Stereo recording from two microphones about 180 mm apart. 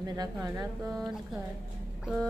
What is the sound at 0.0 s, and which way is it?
Speech, 20° right (ahead or behind).